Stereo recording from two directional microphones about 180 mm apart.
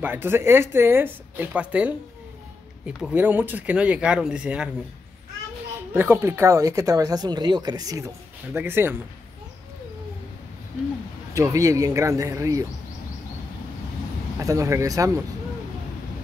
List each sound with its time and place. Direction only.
0.0 s speech: 10° right (ahead or behind)
3.0 s speech: 10° right (ahead or behind)
5.9 s speech: 10° right (ahead or behind)
11.3 s speech: 15° right (ahead or behind)
14.4 s speech: 20° right (ahead or behind)